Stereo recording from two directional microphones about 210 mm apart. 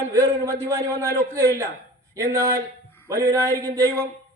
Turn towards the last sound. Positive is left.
turn(degrees=-15)  # may be behind; listen again after turning